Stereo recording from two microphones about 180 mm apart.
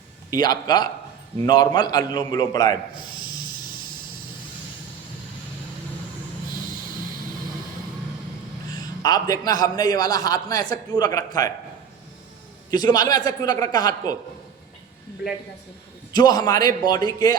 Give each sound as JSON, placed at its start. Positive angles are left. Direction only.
{"t": 0.3, "sound": "a man's voice", "side_deg": 20}
{"t": 8.7, "sound": "a sound", "side_deg": 20}
{"t": 9.6, "sound": "a man's voice", "side_deg": 20}
{"t": 12.7, "sound": "a man's voice", "side_deg": 20}
{"t": 16.1, "sound": "a man's voice", "side_deg": 20}